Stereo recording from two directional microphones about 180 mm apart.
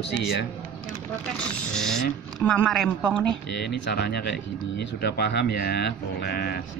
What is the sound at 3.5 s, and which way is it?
Speech, 65° left (ahead or behind).